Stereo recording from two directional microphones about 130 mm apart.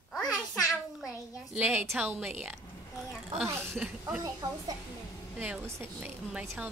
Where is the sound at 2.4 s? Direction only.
Centre (ahead or behind).